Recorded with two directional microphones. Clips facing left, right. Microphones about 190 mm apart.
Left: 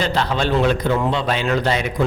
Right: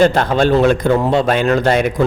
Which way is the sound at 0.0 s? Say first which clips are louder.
Right 8 dB; 50° right (ahead or behind).